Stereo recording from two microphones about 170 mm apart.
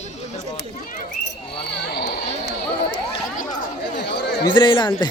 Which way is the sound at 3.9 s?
80° left.